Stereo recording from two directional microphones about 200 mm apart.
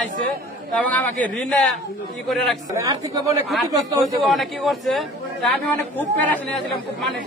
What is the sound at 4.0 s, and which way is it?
A man's voice, centre (ahead or behind).